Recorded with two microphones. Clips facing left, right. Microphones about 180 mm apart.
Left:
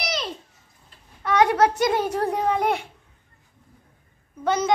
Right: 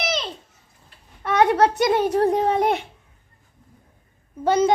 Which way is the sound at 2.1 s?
30° right (ahead or behind).